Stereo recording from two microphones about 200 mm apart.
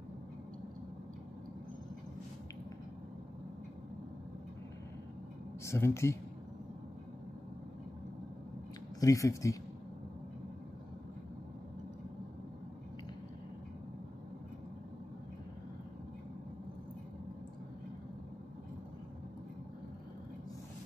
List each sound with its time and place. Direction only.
5.7 s speech: 15° left (ahead or behind)
9.0 s speech: 15° left (ahead or behind)